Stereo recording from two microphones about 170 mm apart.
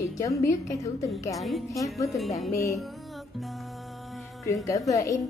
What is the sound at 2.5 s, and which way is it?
Music, 15° left (ahead or behind).